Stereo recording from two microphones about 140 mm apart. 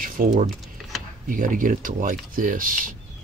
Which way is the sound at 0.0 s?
80° right.